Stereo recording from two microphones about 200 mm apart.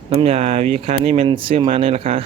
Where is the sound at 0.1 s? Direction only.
30° right (ahead or behind).